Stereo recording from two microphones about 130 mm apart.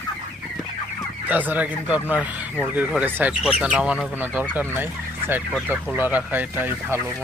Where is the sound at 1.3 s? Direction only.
10° right (ahead or behind).